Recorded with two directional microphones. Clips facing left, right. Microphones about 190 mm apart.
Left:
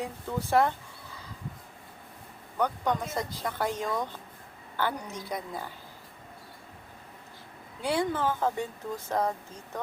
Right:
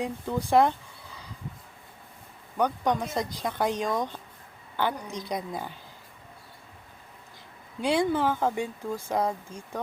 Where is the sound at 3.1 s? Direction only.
15° right (ahead or behind).